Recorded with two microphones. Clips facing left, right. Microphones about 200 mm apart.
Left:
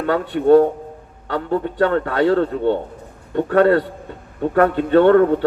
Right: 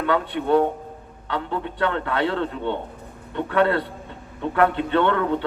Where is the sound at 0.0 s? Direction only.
40° left (ahead or behind).